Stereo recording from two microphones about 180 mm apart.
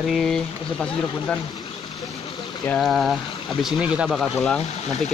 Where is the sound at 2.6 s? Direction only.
5° left (ahead or behind).